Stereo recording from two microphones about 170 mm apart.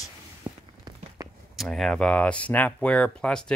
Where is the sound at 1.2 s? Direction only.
20° right (ahead or behind).